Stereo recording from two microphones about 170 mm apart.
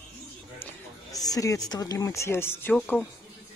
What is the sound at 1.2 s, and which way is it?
Speech, 20° left (ahead or behind).